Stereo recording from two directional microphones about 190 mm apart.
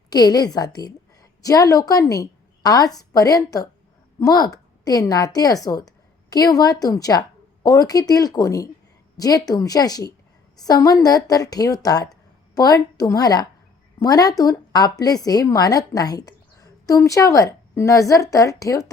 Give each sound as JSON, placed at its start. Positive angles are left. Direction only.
{"t": 0.1, "sound": "a woman's voice", "side_deg": 20}